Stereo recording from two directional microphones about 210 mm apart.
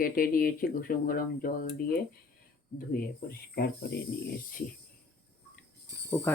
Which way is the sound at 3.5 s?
50° left (ahead or behind).